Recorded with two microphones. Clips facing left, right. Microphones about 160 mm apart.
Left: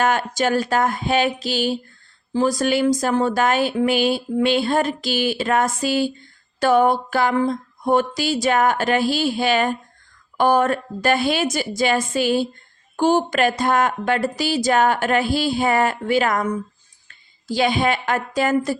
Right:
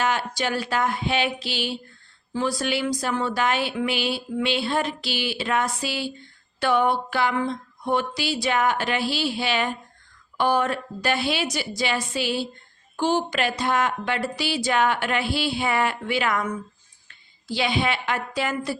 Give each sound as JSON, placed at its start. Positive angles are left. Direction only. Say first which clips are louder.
{"t": 0.0, "sound": "speech", "louder": "left 5 dB", "side_deg": 50}